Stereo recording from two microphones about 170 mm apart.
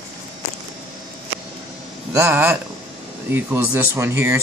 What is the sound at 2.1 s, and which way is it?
Speech, 15° right (ahead or behind).